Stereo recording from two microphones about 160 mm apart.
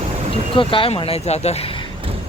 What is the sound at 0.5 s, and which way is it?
Speech, 35° left (ahead or behind).